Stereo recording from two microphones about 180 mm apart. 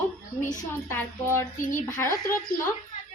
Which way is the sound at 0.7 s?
15° left (ahead or behind).